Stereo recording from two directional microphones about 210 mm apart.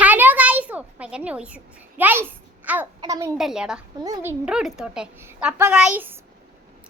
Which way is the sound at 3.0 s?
15° right (ahead or behind).